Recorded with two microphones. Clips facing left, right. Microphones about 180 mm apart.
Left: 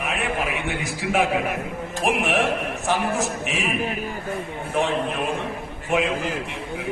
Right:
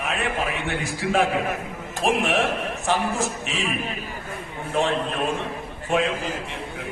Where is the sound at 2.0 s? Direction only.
15° left (ahead or behind).